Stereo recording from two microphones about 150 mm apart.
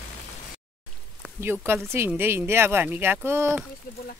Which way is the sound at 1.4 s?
15° right (ahead or behind).